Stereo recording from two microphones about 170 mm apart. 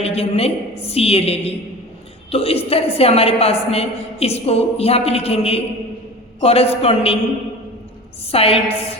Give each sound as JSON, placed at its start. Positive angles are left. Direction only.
{"t": 0.0, "sound": "a woman's voice", "side_deg": 35}
{"t": 8.3, "sound": "a woman's voice", "side_deg": 35}